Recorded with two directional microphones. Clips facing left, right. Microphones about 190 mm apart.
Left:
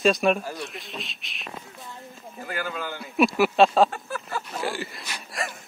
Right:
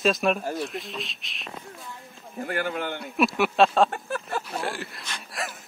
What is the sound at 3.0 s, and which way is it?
Speech, centre (ahead or behind).